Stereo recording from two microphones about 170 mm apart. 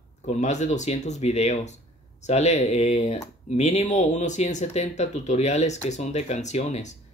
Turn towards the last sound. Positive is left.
turn(degrees=40)  # may be behind; listen again after turning